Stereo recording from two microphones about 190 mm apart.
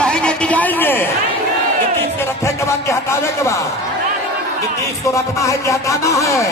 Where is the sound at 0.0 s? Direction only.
5° left (ahead or behind).